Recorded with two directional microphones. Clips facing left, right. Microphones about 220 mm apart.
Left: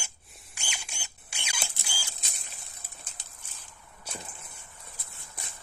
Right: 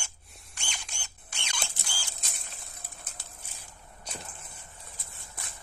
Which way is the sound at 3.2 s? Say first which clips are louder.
Right 4 dB; 20° left (ahead or behind).